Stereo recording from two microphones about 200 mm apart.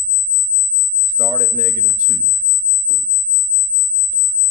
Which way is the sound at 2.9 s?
5° left (ahead or behind).